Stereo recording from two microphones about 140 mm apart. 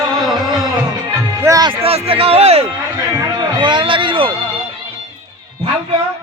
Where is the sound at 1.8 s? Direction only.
45° right (ahead or behind).